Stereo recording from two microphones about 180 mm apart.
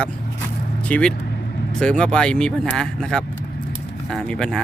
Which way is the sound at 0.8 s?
5° left (ahead or behind).